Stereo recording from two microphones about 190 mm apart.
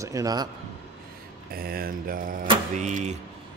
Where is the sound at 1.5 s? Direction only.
50° right (ahead or behind).